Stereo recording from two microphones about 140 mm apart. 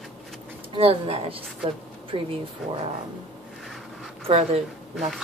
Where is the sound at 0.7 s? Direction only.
40° right (ahead or behind).